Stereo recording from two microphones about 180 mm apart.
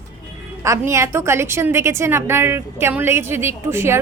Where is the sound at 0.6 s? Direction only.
15° right (ahead or behind).